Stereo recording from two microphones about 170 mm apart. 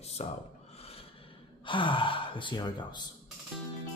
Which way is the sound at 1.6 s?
30° left (ahead or behind).